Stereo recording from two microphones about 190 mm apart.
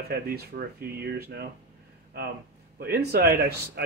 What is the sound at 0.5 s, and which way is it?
Speech, 55° right (ahead or behind).